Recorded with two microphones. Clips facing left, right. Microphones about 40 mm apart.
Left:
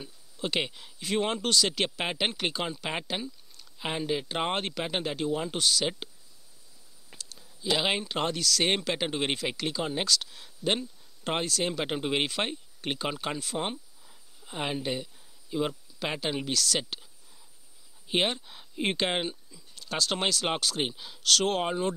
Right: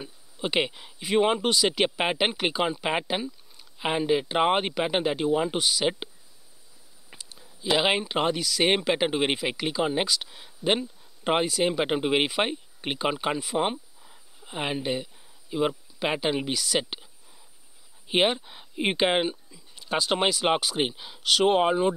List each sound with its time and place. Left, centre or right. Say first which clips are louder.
0.0 s speech: right 3 dB; centre
7.1 s speech: right 1 dB; centre